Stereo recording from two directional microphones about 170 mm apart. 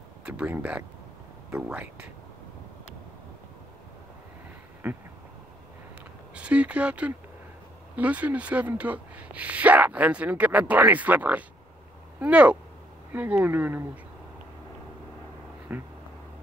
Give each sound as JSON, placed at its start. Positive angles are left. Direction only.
{"t": 0.2, "sound": "speech", "side_deg": -10}
{"t": 4.8, "sound": "a sound", "side_deg": -10}
{"t": 6.3, "sound": "speech", "side_deg": -5}
{"t": 15.7, "sound": "speech", "side_deg": -10}